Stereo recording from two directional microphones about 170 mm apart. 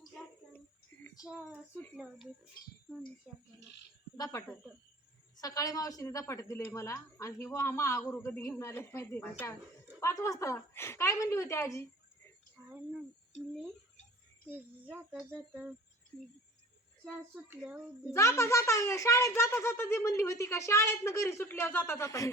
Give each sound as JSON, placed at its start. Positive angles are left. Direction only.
{"t": 0.1, "sound": "child singing", "side_deg": 5}
{"t": 2.9, "sound": "a woman's voice", "side_deg": 0}
{"t": 4.2, "sound": "speech", "side_deg": 20}
{"t": 14.5, "sound": "speech", "side_deg": -10}
{"t": 17.6, "sound": "a woman's voice", "side_deg": -5}
{"t": 18.1, "sound": "speech", "side_deg": 15}